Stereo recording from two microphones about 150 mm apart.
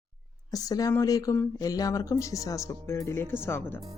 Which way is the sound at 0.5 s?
25° left (ahead or behind).